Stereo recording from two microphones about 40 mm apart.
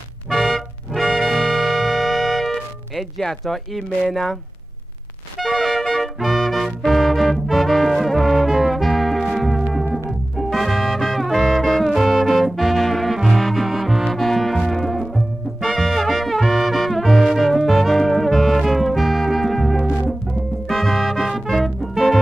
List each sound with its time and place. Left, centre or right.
0.3 s music: centre
4.1 s speech: centre
5.4 s music: centre